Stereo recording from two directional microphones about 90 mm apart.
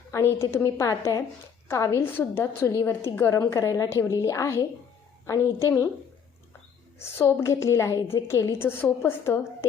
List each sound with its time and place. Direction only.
0.1 s a woman's voice: 30° left (ahead or behind)
7.0 s a woman's voice: 30° left (ahead or behind)